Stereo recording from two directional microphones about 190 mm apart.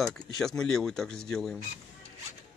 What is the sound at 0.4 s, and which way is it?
Speech, 5° left (ahead or behind).